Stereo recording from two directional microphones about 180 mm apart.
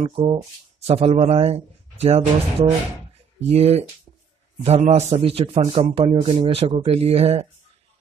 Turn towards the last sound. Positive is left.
turn(degrees=-35)  # may be behind; listen again after turning